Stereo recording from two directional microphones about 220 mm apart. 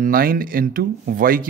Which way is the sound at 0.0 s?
40° right (ahead or behind).